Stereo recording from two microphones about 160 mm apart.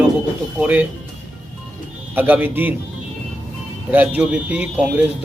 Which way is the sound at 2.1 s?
10° right (ahead or behind).